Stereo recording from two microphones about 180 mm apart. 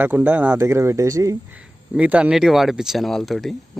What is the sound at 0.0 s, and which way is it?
Speech, 10° right (ahead or behind).